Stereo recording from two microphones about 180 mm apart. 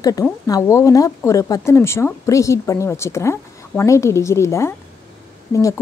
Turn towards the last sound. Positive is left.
turn(degrees=15)  # may be behind; listen again after turning